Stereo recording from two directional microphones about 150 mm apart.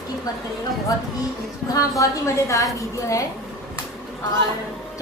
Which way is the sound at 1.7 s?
20° left (ahead or behind).